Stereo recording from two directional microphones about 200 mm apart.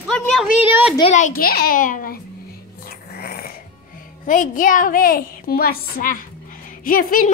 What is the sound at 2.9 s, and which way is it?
Whispering, 50° left (ahead or behind).